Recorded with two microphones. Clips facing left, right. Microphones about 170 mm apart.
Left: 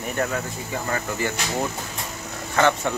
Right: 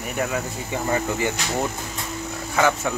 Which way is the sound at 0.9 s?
15° right (ahead or behind).